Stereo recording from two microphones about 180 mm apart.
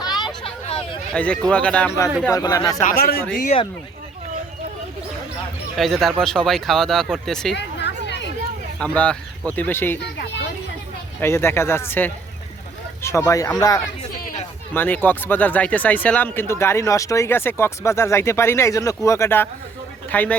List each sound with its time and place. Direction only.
0.0 s vehicle: 25° left (ahead or behind)
1.1 s speech: 5° left (ahead or behind)
2.3 s speech: 20° left (ahead or behind)
2.8 s speech: 60° left (ahead or behind)
3.3 s speech: 45° left (ahead or behind)
5.7 s speech: centre (ahead or behind)
7.5 s chatter: 70° left (ahead or behind)
8.8 s speech: 5° left (ahead or behind)
11.2 s speech: 15° left (ahead or behind)